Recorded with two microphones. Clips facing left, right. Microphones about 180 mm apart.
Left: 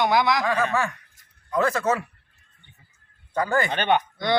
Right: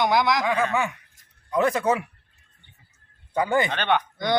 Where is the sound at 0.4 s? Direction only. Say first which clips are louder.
Even; 15° right (ahead or behind).